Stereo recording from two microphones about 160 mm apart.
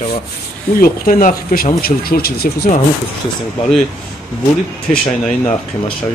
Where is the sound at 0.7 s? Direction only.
60° left (ahead or behind).